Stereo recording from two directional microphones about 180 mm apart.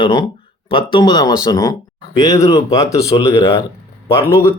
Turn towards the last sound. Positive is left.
turn(degrees=15)  # may be behind; listen again after turning